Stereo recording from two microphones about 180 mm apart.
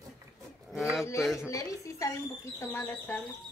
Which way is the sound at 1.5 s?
20° left (ahead or behind).